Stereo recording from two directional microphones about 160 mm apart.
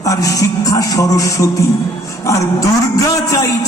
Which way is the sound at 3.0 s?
20° left (ahead or behind).